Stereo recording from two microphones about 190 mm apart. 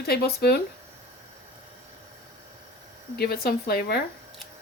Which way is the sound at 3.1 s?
55° left (ahead or behind).